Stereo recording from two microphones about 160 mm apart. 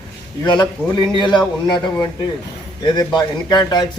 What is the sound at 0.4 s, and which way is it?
A man's voice, 30° left (ahead or behind).